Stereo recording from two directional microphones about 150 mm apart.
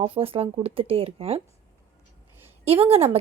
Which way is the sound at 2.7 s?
40° right (ahead or behind).